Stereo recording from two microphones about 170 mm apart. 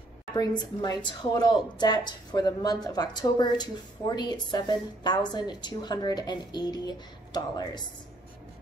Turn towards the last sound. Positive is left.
turn(degrees=25)  # may be behind; listen again after turning